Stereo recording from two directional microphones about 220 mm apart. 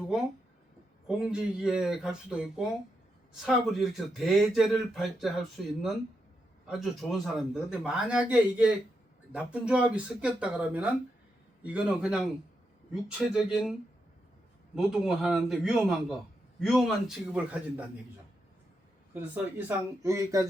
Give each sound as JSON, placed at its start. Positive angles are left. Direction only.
{"t": 0.0, "sound": "speech", "side_deg": 0}
{"t": 14.8, "sound": "speech", "side_deg": 0}
{"t": 19.3, "sound": "speech", "side_deg": -10}